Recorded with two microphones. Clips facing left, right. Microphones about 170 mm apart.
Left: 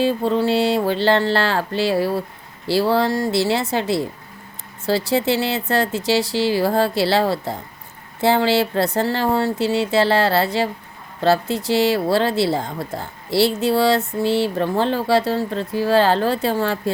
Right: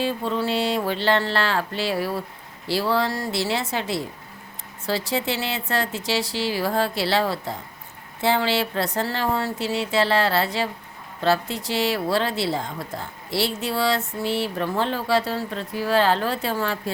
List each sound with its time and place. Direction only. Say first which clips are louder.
0.0 s speech: left 6 dB; 35° left (ahead or behind)
5.1 s speech: left 6 dB; 35° left (ahead or behind)
11.4 s speech: left 7 dB; centre (ahead or behind)
11.7 s speech: left 5 dB; 30° left (ahead or behind)